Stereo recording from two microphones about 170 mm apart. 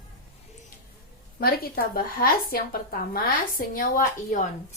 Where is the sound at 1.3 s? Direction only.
60° left (ahead or behind).